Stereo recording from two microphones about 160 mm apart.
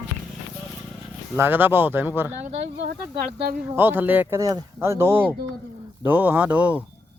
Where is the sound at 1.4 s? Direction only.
15° right (ahead or behind).